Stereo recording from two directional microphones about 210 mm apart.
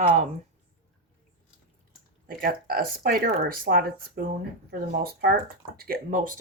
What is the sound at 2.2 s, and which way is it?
Speech, 45° right (ahead or behind).